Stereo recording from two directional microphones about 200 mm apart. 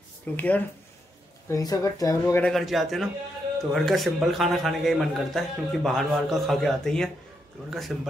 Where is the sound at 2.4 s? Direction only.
Centre (ahead or behind).